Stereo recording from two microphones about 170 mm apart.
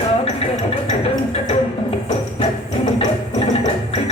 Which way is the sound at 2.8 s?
40° left (ahead or behind).